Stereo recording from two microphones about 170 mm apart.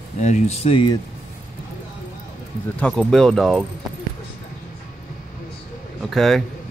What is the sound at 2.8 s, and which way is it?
Speech, 5° left (ahead or behind).